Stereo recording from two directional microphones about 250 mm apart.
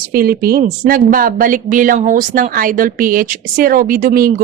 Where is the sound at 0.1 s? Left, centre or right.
Right.